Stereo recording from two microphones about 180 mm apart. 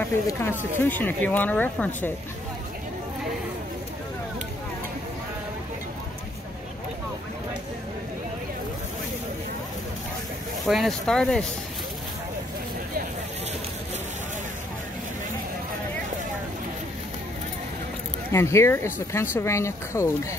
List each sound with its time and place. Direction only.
0.0 s speech: 10° left (ahead or behind)
10.7 s speech: centre (ahead or behind)
18.3 s speech: 15° left (ahead or behind)